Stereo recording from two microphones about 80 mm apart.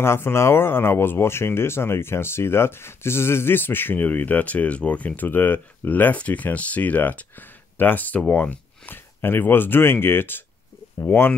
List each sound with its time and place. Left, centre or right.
0.0 s speech: left